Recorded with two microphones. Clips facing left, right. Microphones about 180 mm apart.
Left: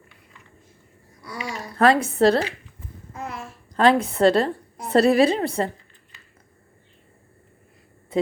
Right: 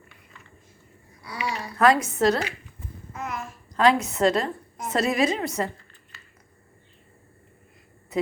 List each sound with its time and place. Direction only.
1.2 s babbling: 45° left (ahead or behind)
1.8 s a child's voice: 30° left (ahead or behind)